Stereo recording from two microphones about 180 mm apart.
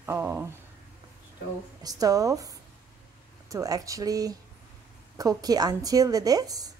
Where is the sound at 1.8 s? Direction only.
20° right (ahead or behind).